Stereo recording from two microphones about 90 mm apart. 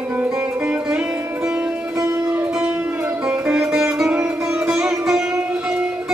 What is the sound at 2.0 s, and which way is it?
Music, 35° right (ahead or behind).